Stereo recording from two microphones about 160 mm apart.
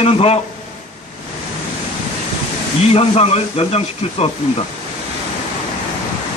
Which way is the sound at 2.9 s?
40° left (ahead or behind).